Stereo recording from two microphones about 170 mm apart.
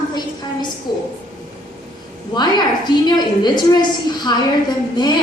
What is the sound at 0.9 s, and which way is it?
Speech, 25° left (ahead or behind).